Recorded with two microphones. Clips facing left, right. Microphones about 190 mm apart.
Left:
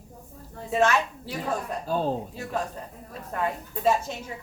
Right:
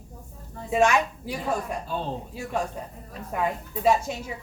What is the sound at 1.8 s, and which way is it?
Speech, 45° left (ahead or behind).